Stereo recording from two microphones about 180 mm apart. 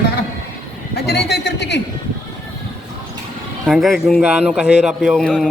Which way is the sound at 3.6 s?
Centre (ahead or behind).